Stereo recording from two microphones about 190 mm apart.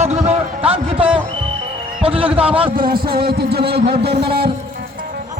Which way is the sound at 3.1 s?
55° right (ahead or behind).